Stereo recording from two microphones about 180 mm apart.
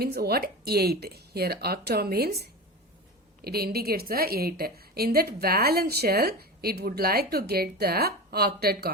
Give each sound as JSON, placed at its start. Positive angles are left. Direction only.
{"t": 0.0, "sound": "a woman's voice", "side_deg": -60}